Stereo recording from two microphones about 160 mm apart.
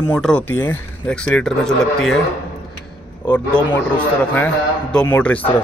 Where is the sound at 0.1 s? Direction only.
5° left (ahead or behind).